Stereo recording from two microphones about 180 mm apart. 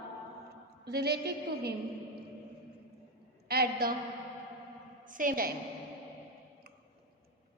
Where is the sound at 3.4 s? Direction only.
60° right (ahead or behind).